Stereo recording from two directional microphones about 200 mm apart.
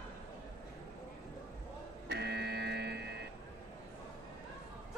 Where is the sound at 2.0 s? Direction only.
55° right (ahead or behind).